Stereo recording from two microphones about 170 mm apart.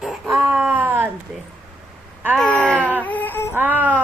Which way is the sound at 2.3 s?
5° left (ahead or behind).